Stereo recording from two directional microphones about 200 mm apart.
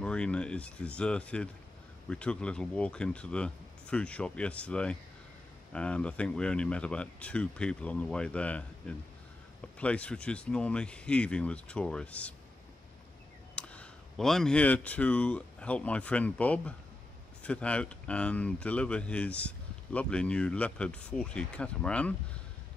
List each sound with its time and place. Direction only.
0.0 s speech: 5° left (ahead or behind)
13.6 s speech: 5° left (ahead or behind)